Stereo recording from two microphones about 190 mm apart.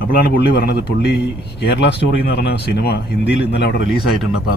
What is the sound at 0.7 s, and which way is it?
Speech, 60° left (ahead or behind).